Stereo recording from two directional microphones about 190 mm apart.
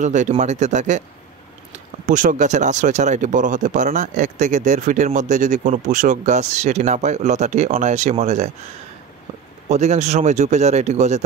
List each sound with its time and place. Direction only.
0.0 s speech: 40° right (ahead or behind)
9.7 s speech: 35° right (ahead or behind)